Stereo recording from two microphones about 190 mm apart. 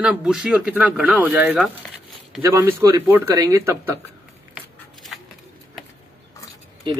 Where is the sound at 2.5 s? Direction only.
15° right (ahead or behind).